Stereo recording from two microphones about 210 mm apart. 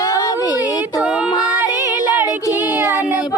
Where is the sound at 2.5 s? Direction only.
10° right (ahead or behind).